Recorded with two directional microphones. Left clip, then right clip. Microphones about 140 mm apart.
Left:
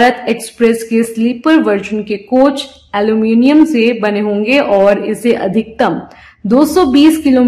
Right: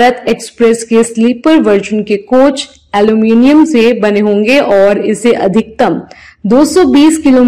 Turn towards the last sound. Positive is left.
turn(degrees=-20)  # may be behind; listen again after turning